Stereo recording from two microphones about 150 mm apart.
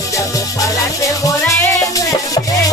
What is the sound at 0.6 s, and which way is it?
Music, 20° left (ahead or behind).